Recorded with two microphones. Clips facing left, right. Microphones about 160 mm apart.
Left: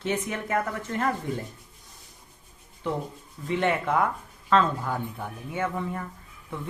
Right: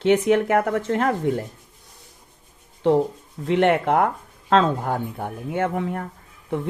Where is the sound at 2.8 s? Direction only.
90° right.